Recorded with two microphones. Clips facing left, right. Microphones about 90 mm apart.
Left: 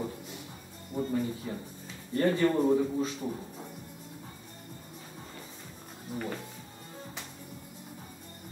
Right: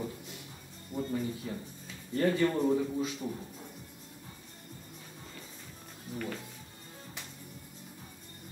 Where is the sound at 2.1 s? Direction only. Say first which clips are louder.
Left 2 dB; 10° left (ahead or behind).